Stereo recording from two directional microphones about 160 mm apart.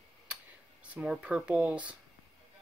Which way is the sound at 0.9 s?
5° right (ahead or behind).